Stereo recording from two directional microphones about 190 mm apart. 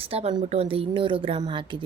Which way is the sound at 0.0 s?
30° right (ahead or behind).